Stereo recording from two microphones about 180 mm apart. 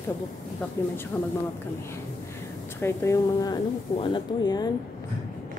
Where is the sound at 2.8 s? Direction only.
15° left (ahead or behind).